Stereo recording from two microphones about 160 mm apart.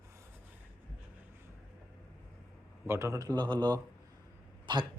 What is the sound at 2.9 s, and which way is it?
Speech, 20° right (ahead or behind).